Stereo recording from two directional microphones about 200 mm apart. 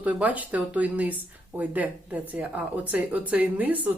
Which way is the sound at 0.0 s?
5° right (ahead or behind).